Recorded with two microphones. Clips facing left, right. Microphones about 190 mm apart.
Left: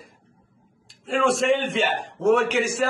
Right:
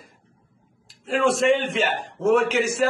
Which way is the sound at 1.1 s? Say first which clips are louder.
Right 1 dB; centre (ahead or behind).